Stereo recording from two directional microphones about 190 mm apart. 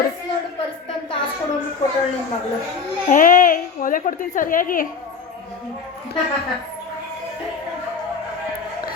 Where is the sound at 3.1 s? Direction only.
45° left (ahead or behind).